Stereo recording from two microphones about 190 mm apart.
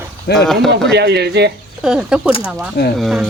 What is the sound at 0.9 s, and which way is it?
Speech, 60° right (ahead or behind).